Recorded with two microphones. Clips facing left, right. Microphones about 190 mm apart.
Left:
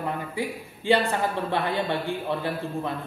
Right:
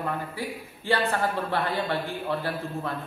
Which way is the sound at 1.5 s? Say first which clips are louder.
Left 1 dB; 20° left (ahead or behind).